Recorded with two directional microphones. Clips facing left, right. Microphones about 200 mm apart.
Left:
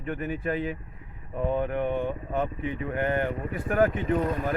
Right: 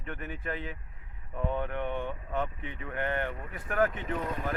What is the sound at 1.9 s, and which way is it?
Speech, 40° left (ahead or behind).